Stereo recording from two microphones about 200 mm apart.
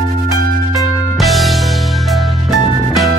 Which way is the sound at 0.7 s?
Centre (ahead or behind).